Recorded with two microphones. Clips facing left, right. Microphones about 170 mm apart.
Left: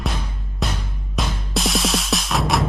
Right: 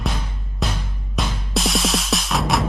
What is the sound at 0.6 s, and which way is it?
Music, centre (ahead or behind).